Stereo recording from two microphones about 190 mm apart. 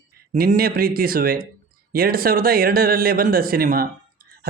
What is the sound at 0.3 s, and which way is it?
Speech, 50° right (ahead or behind).